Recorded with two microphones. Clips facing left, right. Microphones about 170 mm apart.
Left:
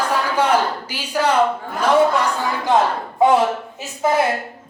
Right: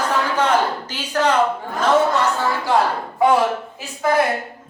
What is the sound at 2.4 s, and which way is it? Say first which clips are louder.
Speech: left 1 dB; 20° left (ahead or behind).